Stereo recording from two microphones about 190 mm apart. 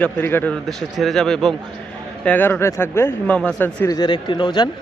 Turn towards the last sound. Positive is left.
turn(degrees=25)  # may be behind; listen again after turning